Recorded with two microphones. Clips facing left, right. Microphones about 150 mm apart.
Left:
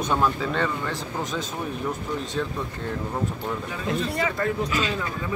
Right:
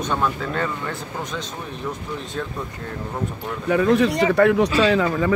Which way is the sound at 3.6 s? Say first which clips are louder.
Right 15 dB; 70° right (ahead or behind).